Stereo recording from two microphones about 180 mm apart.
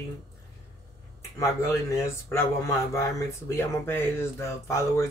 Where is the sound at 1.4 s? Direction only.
15° left (ahead or behind).